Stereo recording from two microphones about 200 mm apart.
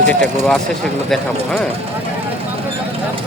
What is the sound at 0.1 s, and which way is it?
Speech, 5° left (ahead or behind).